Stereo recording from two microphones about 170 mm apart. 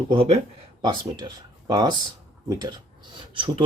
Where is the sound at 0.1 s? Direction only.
35° right (ahead or behind).